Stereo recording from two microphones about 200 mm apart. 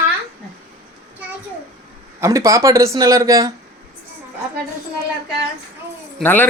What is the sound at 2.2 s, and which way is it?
Speech, 15° right (ahead or behind).